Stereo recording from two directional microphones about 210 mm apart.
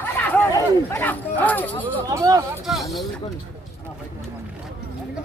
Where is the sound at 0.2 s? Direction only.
10° left (ahead or behind).